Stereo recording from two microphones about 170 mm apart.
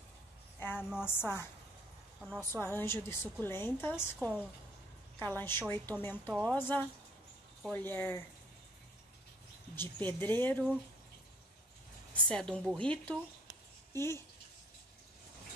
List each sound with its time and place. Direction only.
0.7 s a woman's voice: 5° right (ahead or behind)
1.0 s a woman's voice: 15° left (ahead or behind)
9.8 s a woman's voice: 10° left (ahead or behind)
12.3 s a woman's voice: 5° left (ahead or behind)